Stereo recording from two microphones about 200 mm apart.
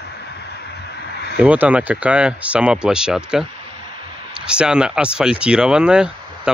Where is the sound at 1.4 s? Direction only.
5° right (ahead or behind).